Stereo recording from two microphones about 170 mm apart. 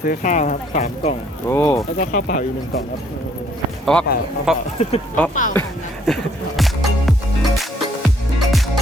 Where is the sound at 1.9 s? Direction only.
50° left (ahead or behind).